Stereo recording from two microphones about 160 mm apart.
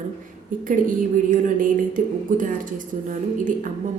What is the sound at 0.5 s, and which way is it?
Speech, 55° right (ahead or behind).